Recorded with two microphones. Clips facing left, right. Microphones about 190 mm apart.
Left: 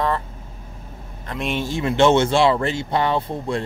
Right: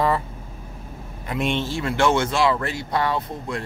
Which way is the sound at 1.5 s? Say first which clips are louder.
Left 2 dB; 15° left (ahead or behind).